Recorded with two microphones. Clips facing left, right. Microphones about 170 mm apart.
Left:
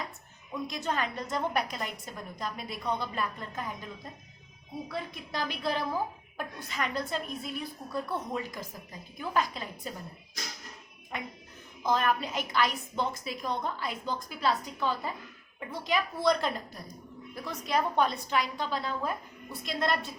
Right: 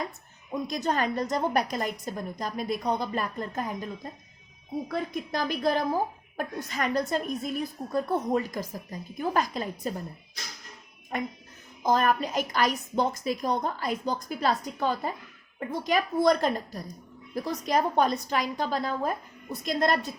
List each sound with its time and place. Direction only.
0.7 s a woman's voice: 40° right (ahead or behind)
4.9 s a woman's voice: 45° right (ahead or behind)
11.1 s a woman's voice: 45° right (ahead or behind)